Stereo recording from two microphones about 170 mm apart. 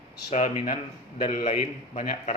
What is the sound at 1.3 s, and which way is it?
A man's voice, 50° left (ahead or behind).